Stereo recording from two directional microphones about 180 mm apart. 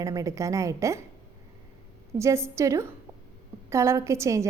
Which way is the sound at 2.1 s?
15° right (ahead or behind).